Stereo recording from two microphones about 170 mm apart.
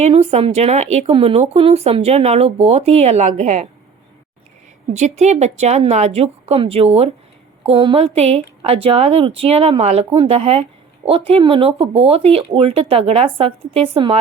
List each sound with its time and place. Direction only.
0.0 s speech: 40° right (ahead or behind)
4.9 s speech: 40° right (ahead or behind)